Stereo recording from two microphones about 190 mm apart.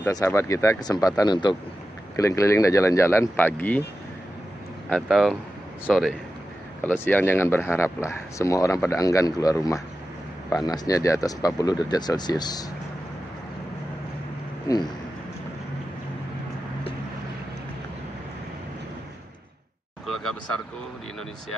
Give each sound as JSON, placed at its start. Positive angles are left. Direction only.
{"t": 0.0, "sound": "speech", "side_deg": 15}
{"t": 4.8, "sound": "speech", "side_deg": 0}
{"t": 14.7, "sound": "speech", "side_deg": 15}
{"t": 20.1, "sound": "a sound", "side_deg": 5}